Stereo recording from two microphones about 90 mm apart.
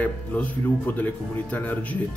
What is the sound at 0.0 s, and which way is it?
A man's voice, 20° left (ahead or behind).